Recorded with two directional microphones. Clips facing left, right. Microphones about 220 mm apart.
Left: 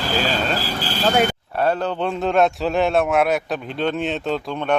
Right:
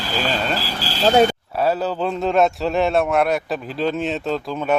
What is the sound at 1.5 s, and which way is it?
A man's voice, 5° right (ahead or behind).